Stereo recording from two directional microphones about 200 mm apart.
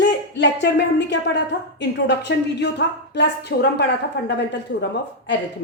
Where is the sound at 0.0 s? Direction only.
60° left (ahead or behind).